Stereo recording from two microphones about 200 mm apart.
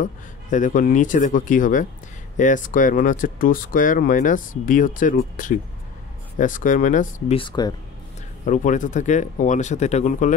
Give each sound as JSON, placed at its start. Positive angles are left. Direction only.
{"t": 0.0, "sound": "speech", "side_deg": 40}
{"t": 7.3, "sound": "speech", "side_deg": 20}
{"t": 8.5, "sound": "speech", "side_deg": 40}